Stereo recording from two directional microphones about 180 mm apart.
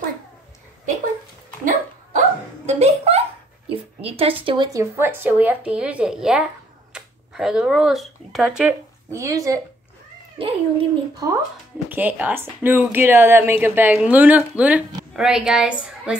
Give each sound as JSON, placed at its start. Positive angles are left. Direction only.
{"t": 2.1, "sound": "hiccup", "side_deg": -40}
{"t": 3.6, "sound": "a sound", "side_deg": -30}
{"t": 4.5, "sound": "speech", "side_deg": -20}
{"t": 9.1, "sound": "speech", "side_deg": -20}
{"t": 11.9, "sound": "a woman's voice", "side_deg": -10}